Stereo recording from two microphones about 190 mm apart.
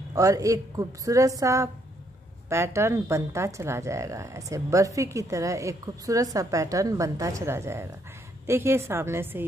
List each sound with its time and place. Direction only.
0.1 s a woman's voice: 15° right (ahead or behind)